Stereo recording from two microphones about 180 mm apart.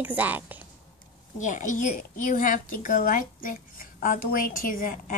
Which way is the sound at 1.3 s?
45° left (ahead or behind).